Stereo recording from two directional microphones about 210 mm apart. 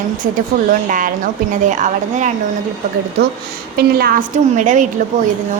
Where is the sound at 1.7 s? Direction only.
35° right (ahead or behind).